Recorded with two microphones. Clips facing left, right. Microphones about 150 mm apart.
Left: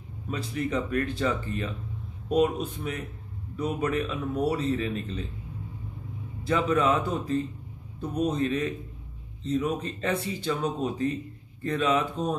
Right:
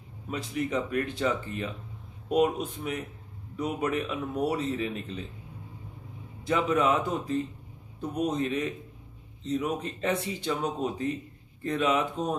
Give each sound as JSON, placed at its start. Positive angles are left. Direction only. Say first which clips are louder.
{"t": 0.3, "sound": "speech", "louder": "left 1 dB", "side_deg": -15}
{"t": 6.4, "sound": "speech", "louder": "left 1 dB", "side_deg": -15}